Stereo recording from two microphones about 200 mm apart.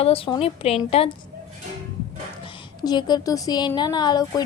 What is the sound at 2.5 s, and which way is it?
A woman's voice, 20° left (ahead or behind).